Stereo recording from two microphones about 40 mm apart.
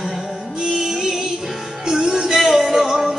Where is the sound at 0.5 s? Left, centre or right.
Centre.